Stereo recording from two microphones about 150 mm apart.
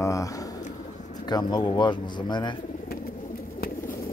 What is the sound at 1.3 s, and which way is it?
Speech, 30° left (ahead or behind).